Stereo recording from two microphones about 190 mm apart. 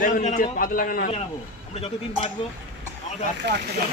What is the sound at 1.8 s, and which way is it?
Speech, 30° left (ahead or behind).